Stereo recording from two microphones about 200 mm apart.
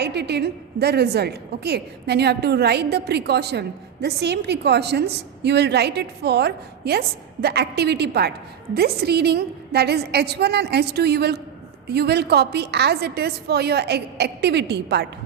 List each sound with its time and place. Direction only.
0.0 s a woman's voice: 55° right (ahead or behind)